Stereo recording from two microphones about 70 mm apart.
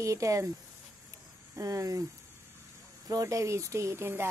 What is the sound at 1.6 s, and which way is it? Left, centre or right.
Speech, right.